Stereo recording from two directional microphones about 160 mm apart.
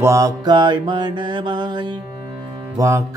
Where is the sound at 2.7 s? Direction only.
20° right (ahead or behind).